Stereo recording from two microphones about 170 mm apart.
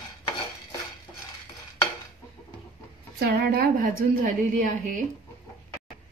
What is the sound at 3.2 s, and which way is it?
A woman's voice, 70° right (ahead or behind).